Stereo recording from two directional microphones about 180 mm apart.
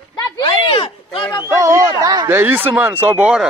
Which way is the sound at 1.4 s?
15° right (ahead or behind).